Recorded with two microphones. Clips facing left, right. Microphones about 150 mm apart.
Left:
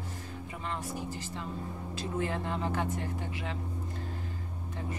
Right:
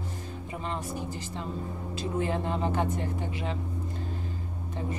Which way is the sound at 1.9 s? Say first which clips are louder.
Right 4 dB; 20° right (ahead or behind).